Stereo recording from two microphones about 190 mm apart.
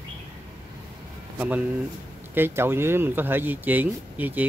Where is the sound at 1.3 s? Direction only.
10° right (ahead or behind).